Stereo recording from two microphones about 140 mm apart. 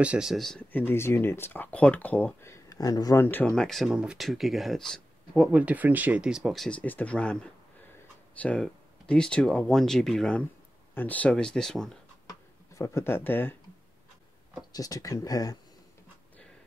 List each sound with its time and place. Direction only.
0.0 s speech: 5° right (ahead or behind); by 3.3 s 25° left (ahead or behind)
3.3 s speech: 10° left (ahead or behind)
5.5 s speech: 10° right (ahead or behind)
12.3 s speech: 20° left (ahead or behind)
14.7 s speech: 25° left (ahead or behind)